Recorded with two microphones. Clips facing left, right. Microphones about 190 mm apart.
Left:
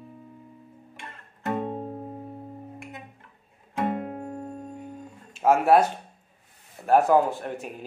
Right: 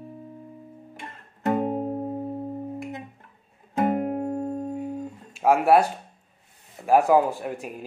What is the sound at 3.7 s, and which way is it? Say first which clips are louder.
Music: right 5 dB; 25° right (ahead or behind).